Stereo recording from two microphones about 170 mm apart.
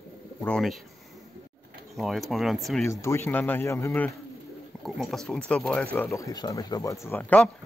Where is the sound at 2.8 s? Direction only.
15° left (ahead or behind).